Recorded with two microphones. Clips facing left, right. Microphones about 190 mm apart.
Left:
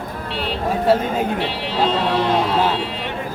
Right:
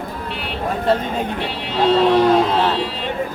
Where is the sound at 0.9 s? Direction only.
5° left (ahead or behind).